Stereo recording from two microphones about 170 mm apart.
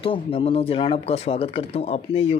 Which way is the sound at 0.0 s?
30° left (ahead or behind).